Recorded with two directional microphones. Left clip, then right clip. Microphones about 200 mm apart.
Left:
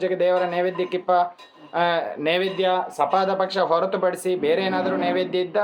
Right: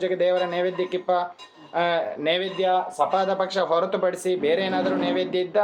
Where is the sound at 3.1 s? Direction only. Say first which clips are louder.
Left 3 dB; 10° left (ahead or behind).